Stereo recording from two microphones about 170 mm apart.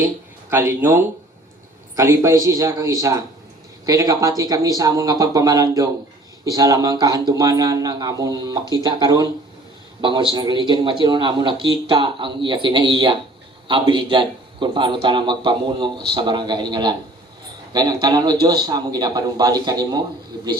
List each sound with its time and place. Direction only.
0.5 s a man's voice: 15° right (ahead or behind)